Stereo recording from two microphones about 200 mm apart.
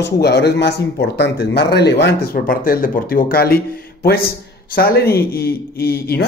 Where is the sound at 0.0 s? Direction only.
55° left (ahead or behind).